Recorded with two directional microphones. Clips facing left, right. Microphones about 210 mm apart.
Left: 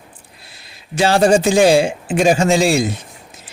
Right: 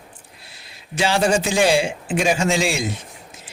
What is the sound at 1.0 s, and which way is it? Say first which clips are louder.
A man's voice: left 6 dB; 40° left (ahead or behind).